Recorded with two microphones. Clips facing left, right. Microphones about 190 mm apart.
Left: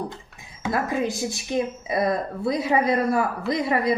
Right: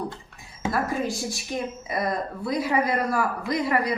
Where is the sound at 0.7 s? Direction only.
20° left (ahead or behind).